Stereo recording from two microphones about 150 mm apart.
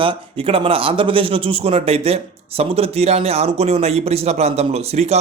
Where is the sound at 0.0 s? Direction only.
35° right (ahead or behind).